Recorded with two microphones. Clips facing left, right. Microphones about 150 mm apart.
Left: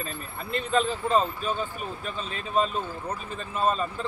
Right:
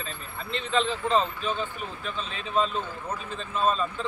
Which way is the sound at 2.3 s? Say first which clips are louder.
Left 1 dB; 45° left (ahead or behind).